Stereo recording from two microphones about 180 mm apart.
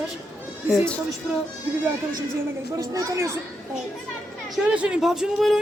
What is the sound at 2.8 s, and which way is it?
Speech, 20° right (ahead or behind).